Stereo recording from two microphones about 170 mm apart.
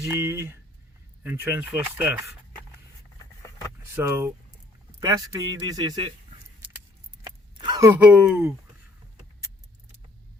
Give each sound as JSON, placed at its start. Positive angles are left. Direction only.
{"t": 0.0, "sound": "speech", "side_deg": -10}
{"t": 3.9, "sound": "a man's voice", "side_deg": -15}
{"t": 7.3, "sound": "a sound", "side_deg": -25}
{"t": 7.9, "sound": "speech", "side_deg": -10}